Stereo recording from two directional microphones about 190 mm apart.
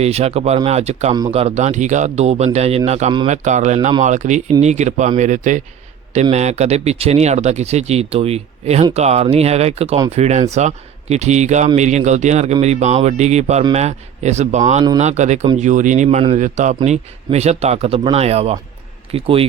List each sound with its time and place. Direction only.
0.0 s speech: 35° right (ahead or behind)